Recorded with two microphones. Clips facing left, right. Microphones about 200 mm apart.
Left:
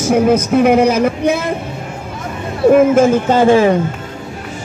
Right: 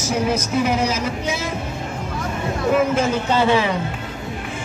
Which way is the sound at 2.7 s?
50° left (ahead or behind).